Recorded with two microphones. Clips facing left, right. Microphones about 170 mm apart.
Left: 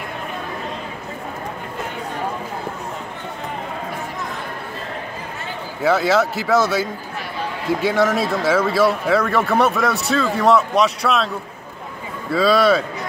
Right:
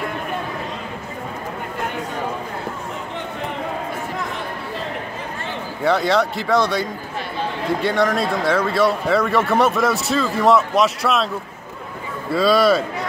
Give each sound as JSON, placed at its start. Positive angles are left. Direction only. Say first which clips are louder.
{"t": 5.9, "sound": "a man's voice", "louder": "left 1 dB", "side_deg": 5}
{"t": 12.3, "sound": "a man's voice", "louder": "even", "side_deg": 0}